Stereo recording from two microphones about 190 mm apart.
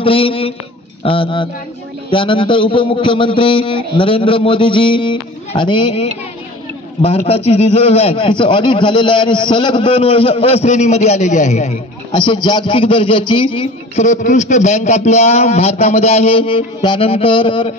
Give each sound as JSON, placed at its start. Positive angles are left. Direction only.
{"t": 0.0, "sound": "a man's voice", "side_deg": 30}
{"t": 12.1, "sound": "speech", "side_deg": 25}
{"t": 14.0, "sound": "a man's voice", "side_deg": 40}